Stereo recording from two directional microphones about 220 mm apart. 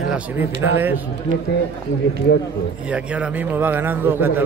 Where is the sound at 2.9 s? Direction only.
5° right (ahead or behind).